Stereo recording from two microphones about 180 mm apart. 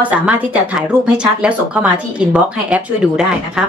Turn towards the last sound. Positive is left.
turn(degrees=-5)  # may be behind; listen again after turning